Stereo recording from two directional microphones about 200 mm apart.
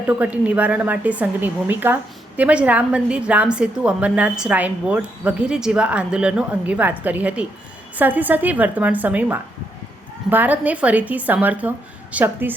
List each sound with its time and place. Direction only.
0.1 s speech: 5° right (ahead or behind)